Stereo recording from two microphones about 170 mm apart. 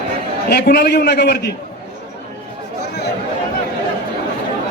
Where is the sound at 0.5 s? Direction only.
70° left (ahead or behind).